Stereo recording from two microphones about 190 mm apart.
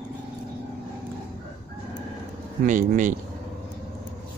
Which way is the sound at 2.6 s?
40° right (ahead or behind).